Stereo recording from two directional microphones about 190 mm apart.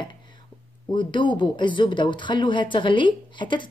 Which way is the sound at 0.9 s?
25° left (ahead or behind).